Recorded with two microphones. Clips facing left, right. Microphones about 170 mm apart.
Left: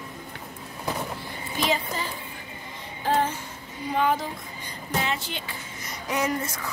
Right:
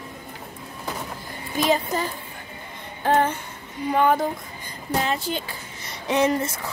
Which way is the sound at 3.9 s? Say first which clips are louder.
Right 4 dB; 55° right (ahead or behind).